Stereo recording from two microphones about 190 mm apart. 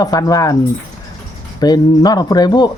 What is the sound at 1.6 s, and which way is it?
Speech, 20° left (ahead or behind).